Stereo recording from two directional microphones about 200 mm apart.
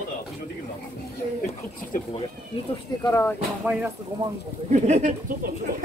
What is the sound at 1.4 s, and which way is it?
Speech, 40° left (ahead or behind).